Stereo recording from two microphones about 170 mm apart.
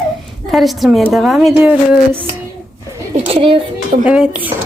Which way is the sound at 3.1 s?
35° right (ahead or behind).